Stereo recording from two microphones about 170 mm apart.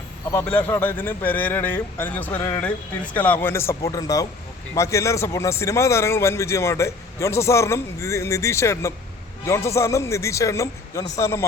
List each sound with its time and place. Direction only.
0.3 s a man's voice: 10° left (ahead or behind)